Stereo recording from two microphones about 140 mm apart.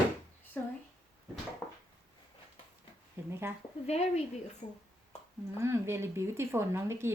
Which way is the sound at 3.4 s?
15° right (ahead or behind).